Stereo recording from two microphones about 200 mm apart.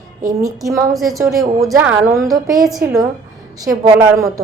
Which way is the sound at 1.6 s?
5° right (ahead or behind).